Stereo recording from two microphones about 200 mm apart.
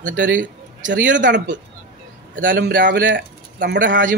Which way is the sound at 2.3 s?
45° right (ahead or behind).